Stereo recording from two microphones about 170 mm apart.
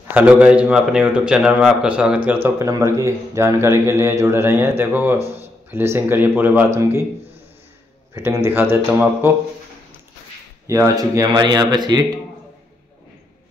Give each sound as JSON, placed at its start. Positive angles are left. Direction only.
{"t": 0.1, "sound": "a man's voice", "side_deg": -10}
{"t": 8.1, "sound": "a man's voice", "side_deg": -15}
{"t": 10.7, "sound": "speech", "side_deg": -20}